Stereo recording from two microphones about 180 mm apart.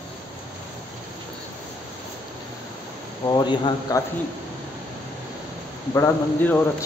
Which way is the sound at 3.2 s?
25° left (ahead or behind).